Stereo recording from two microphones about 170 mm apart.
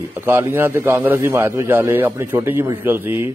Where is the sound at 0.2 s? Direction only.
15° right (ahead or behind).